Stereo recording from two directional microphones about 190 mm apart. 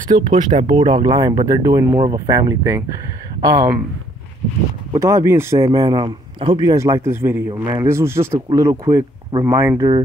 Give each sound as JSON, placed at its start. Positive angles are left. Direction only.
{"t": 0.1, "sound": "a man's voice", "side_deg": -25}
{"t": 4.9, "sound": "a man's voice", "side_deg": -15}